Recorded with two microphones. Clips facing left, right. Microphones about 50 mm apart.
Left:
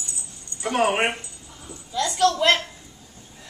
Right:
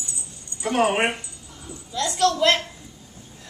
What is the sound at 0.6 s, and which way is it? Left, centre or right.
Speech, centre.